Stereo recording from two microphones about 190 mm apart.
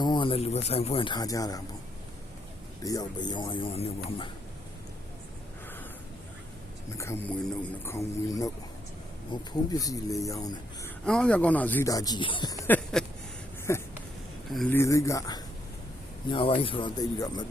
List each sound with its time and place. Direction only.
0.0 s speech: 25° left (ahead or behind)
2.8 s speech: 20° left (ahead or behind)
6.9 s speech: 15° left (ahead or behind)
11.0 s speech: 5° left (ahead or behind); by 12.6 s 20° left (ahead or behind)
12.6 s speech: 5° left (ahead or behind)
13.7 s a sound: 15° left (ahead or behind)
14.5 s speech: centre (ahead or behind)
14.8 s speech: 15° left (ahead or behind)
16.5 s speech: 30° left (ahead or behind)